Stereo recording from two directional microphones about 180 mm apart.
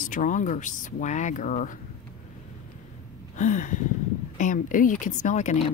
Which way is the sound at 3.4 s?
45° left (ahead or behind).